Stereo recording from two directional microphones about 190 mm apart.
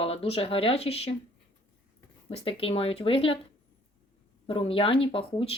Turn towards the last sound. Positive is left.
turn(degrees=30)  # may be behind; listen again after turning